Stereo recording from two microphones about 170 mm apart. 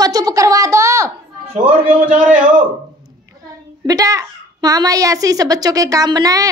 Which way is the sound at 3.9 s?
20° right (ahead or behind).